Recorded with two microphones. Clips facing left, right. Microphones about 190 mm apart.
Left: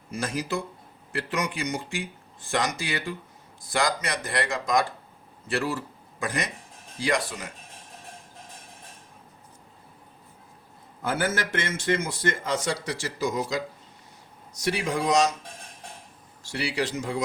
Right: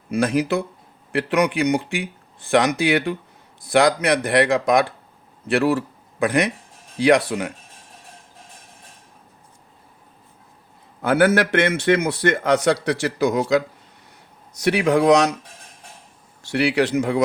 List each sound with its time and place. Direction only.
0.1 s a man's voice: 65° right (ahead or behind)
11.0 s a man's voice: 65° right (ahead or behind)
16.4 s a man's voice: 65° right (ahead or behind)